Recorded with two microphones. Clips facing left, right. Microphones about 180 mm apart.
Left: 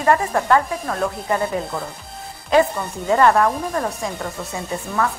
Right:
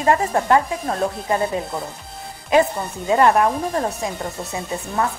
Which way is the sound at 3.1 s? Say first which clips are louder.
Even; 20° right (ahead or behind).